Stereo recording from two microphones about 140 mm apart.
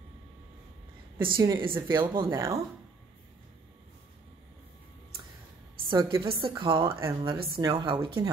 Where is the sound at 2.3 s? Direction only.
20° right (ahead or behind).